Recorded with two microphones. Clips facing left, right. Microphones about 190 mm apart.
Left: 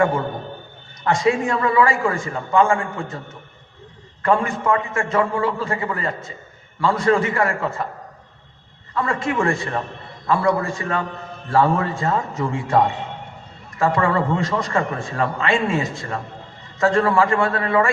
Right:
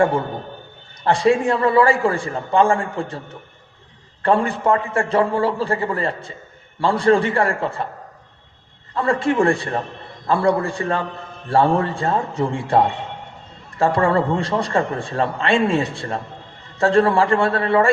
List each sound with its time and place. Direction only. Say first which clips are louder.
1.0 s a man's voice: right 3 dB; 35° right (ahead or behind)
4.2 s a man's voice: right 2 dB; 35° right (ahead or behind)
9.0 s a man's voice: right 4 dB; 35° right (ahead or behind)